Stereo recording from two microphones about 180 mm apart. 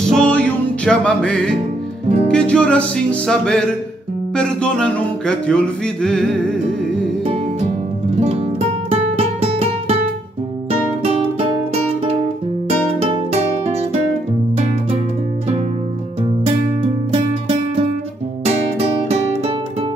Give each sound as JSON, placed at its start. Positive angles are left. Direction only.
{"t": 0.0, "sound": "music", "side_deg": 5}
{"t": 9.4, "sound": "music", "side_deg": -30}
{"t": 13.3, "sound": "guitar", "side_deg": -35}
{"t": 16.8, "sound": "music", "side_deg": -30}